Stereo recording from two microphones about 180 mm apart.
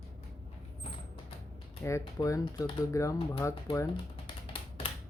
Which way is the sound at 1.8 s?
15° left (ahead or behind).